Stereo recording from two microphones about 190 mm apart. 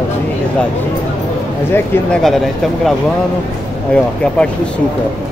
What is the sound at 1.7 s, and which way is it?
Speech, 5° left (ahead or behind).